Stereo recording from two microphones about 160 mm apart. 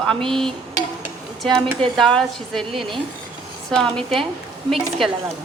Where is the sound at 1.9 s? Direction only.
5° left (ahead or behind).